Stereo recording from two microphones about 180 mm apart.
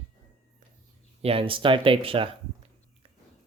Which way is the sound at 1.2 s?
30° right (ahead or behind).